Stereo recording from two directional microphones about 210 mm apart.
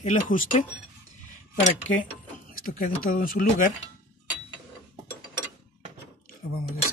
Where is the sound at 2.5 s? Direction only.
45° left (ahead or behind).